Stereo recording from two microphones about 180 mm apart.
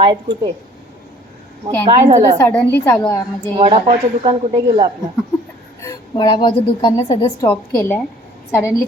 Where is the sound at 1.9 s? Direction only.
35° right (ahead or behind).